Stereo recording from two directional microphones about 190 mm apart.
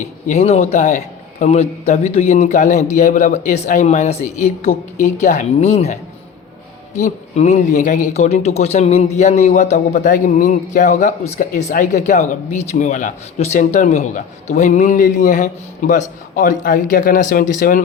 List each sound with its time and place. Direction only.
0.3 s speech: 35° left (ahead or behind)
7.0 s a man's voice: 35° left (ahead or behind)